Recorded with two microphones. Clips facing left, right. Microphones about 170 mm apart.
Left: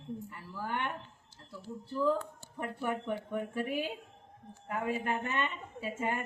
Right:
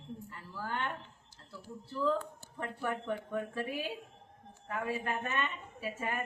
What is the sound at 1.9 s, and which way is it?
A woman's voice, 15° left (ahead or behind).